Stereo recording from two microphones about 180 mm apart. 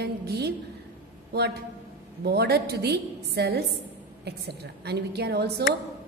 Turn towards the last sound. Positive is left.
turn(degrees=-65)  # may be behind; listen again after turning